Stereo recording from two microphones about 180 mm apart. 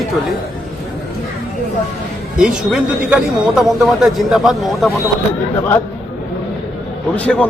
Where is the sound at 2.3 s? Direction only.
5° right (ahead or behind).